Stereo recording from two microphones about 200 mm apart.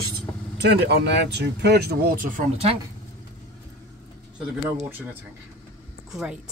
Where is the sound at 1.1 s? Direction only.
60° right (ahead or behind).